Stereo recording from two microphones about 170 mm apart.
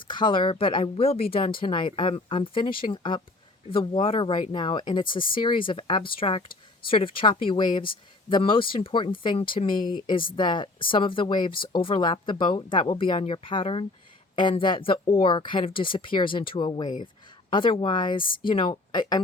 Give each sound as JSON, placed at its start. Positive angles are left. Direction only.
{"t": 0.0, "sound": "speech", "side_deg": 25}